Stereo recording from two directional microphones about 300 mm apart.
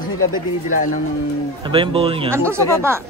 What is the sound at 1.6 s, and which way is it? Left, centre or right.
Speech, centre.